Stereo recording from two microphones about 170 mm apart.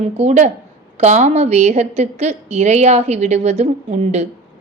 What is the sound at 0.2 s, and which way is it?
A woman's voice, 40° right (ahead or behind).